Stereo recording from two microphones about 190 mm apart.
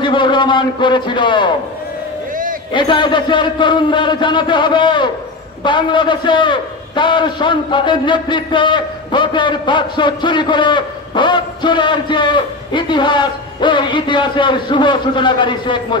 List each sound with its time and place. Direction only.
0.0 s a man's voice: 25° left (ahead or behind)
2.7 s a man's voice: 25° left (ahead or behind)